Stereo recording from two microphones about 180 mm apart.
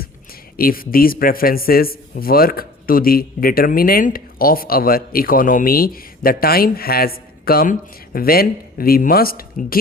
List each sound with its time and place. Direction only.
0.5 s a man's voice: 55° left (ahead or behind)